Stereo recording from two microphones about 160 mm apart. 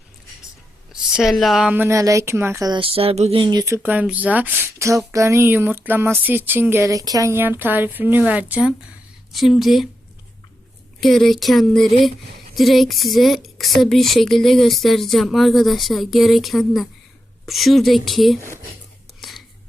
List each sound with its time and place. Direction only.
1.1 s speech: centre (ahead or behind)
1.7 s speech: 15° right (ahead or behind)
3.8 s speech: 10° right (ahead or behind)
11.0 s speech: centre (ahead or behind)